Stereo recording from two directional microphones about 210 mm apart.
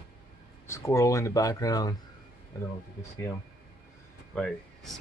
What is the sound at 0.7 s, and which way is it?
Speech, 15° left (ahead or behind).